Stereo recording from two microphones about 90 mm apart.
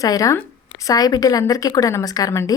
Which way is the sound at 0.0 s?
40° left (ahead or behind).